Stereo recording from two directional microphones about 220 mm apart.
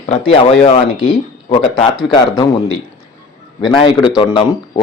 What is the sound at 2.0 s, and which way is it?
Speech, 20° left (ahead or behind).